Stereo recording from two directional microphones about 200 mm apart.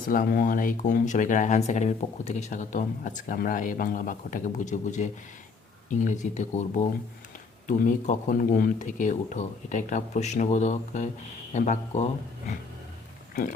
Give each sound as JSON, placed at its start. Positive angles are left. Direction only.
{"t": 0.1, "sound": "speech", "side_deg": 45}